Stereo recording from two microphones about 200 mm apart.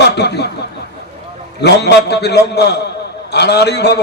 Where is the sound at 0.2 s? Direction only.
55° left (ahead or behind).